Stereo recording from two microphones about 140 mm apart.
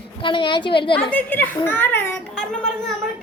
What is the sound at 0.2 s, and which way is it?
Speech, 35° left (ahead or behind).